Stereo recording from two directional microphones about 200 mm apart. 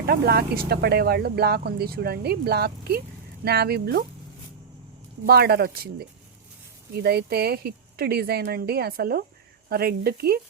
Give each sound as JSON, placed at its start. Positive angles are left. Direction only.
{"t": 0.0, "sound": "speech", "side_deg": -50}
{"t": 5.2, "sound": "speech", "side_deg": -50}